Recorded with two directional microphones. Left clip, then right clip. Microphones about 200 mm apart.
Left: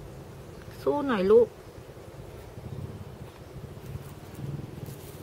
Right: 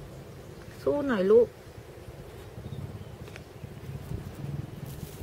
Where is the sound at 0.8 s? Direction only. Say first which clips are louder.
Even; 20° left (ahead or behind).